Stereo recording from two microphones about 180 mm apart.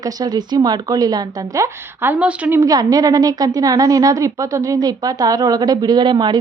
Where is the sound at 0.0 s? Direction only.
20° right (ahead or behind).